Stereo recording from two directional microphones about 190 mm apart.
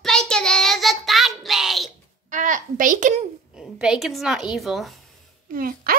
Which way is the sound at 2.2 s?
40° right (ahead or behind).